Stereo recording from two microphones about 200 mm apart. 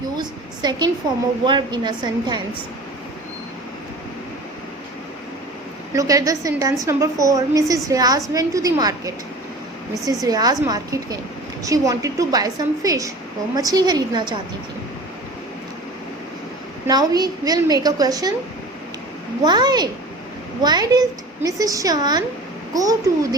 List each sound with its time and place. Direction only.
0.2 s a woman's voice: 20° right (ahead or behind)
5.9 s a woman's voice: 15° right (ahead or behind)
16.8 s a woman's voice: 20° right (ahead or behind)
19.5 s a woman's voice: 20° right (ahead or behind)